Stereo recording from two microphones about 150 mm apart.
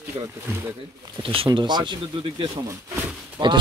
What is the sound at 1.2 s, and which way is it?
Speech, 40° right (ahead or behind).